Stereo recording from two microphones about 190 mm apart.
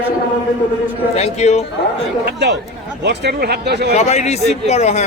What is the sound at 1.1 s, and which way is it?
Speech, 35° left (ahead or behind).